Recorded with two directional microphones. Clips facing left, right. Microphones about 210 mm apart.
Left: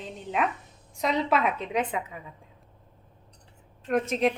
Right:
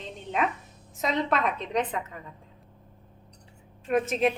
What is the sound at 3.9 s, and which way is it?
Speech, centre (ahead or behind).